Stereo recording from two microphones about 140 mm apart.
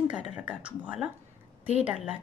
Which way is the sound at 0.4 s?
10° right (ahead or behind).